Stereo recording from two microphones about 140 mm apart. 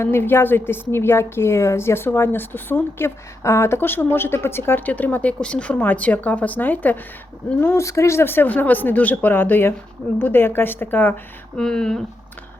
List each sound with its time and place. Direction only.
0.0 s a woman's voice: 15° left (ahead or behind)